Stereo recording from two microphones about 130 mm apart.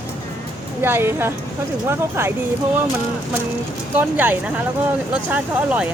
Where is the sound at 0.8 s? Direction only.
20° right (ahead or behind).